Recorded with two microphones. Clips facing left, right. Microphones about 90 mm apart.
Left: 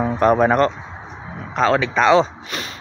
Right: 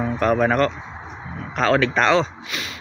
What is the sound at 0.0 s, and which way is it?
Speech, 30° left (ahead or behind).